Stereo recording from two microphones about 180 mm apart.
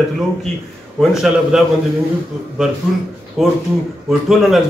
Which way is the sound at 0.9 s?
Centre (ahead or behind).